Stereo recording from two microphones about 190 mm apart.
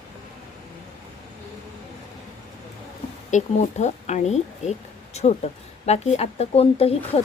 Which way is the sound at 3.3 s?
40° left (ahead or behind).